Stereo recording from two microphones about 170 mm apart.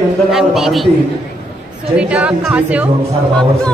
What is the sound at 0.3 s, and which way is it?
Speech, centre (ahead or behind).